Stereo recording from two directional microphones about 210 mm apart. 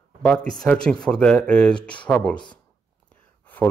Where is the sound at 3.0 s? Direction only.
5° left (ahead or behind).